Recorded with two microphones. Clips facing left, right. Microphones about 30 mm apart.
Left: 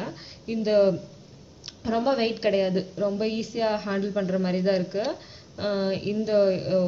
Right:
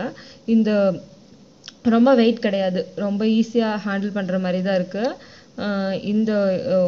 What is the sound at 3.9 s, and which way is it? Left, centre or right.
Speech, right.